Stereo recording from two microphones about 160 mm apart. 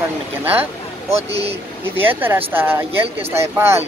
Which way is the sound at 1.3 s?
40° right (ahead or behind).